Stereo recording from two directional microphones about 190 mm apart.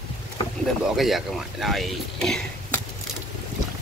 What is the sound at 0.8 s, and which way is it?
Speech, centre (ahead or behind).